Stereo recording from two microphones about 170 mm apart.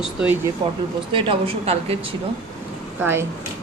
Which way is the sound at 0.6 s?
30° right (ahead or behind).